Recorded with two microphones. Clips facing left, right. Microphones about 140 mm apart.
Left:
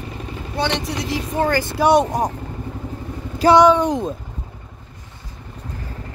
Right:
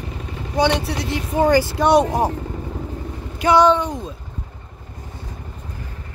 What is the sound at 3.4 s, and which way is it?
Speech, 35° left (ahead or behind).